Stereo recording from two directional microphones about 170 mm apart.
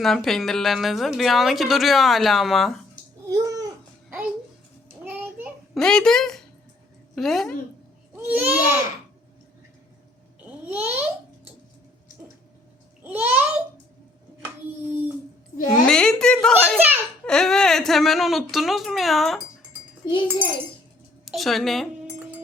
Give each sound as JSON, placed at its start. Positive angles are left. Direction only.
{"t": 0.0, "sound": "a woman's voice", "side_deg": 0}
{"t": 3.2, "sound": "babbling", "side_deg": -20}
{"t": 5.7, "sound": "a woman's voice", "side_deg": 5}
{"t": 8.1, "sound": "a child's voice", "side_deg": -10}
{"t": 10.4, "sound": "a sound", "side_deg": -10}
{"t": 13.0, "sound": "a child's voice", "side_deg": -10}
{"t": 14.8, "sound": "a sound", "side_deg": -10}
{"t": 15.7, "sound": "a woman's voice", "side_deg": 5}
{"t": 16.7, "sound": "a child's voice", "side_deg": -10}
{"t": 17.2, "sound": "a woman's voice", "side_deg": 5}
{"t": 20.1, "sound": "a child's voice", "side_deg": 30}
{"t": 21.2, "sound": "a woman's voice", "side_deg": 0}